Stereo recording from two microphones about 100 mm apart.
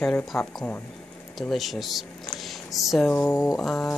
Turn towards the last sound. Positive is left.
turn(degrees=5)  # may be behind; listen again after turning